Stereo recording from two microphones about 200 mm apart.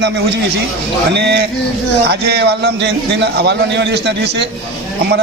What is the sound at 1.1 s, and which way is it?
A man's voice, 55° right (ahead or behind).